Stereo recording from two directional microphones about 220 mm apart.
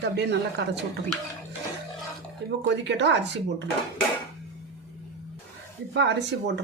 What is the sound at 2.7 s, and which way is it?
Speech, 50° right (ahead or behind).